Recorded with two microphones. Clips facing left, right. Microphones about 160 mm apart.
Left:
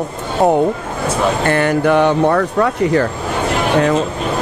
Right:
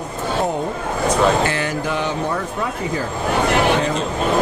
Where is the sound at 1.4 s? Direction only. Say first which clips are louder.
Left 7 dB; 55° left (ahead or behind).